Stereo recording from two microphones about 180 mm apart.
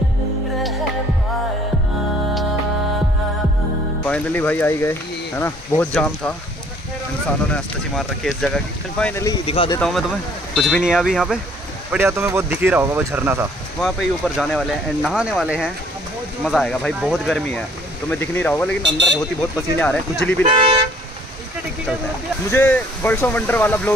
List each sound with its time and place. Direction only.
4.0 s speech: 10° left (ahead or behind)
9.0 s speech: 15° left (ahead or behind)
9.5 s speech: 30° left (ahead or behind)
9.8 s speech: centre (ahead or behind)
13.7 s speech: centre (ahead or behind)
18.8 s speech: 80° right
19.8 s speech: 5° left (ahead or behind)
20.4 s speech: 30° right (ahead or behind)
22.5 s speech: 10° left (ahead or behind)